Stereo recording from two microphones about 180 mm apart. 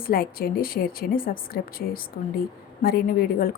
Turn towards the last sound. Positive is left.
turn(degrees=55)  # may be behind; listen again after turning